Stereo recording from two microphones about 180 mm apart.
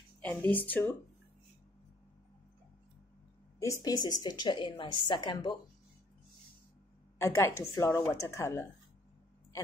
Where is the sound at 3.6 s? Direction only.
20° left (ahead or behind).